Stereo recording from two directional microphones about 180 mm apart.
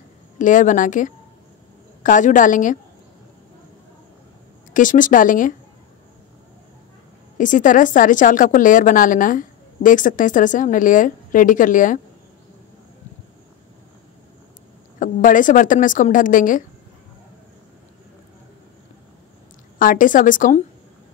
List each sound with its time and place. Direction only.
0.4 s a woman's voice: 45° left (ahead or behind)
4.7 s a woman's voice: 45° left (ahead or behind)
7.3 s a woman's voice: 45° left (ahead or behind)
15.0 s a woman's voice: 45° left (ahead or behind)
19.8 s a woman's voice: 50° left (ahead or behind)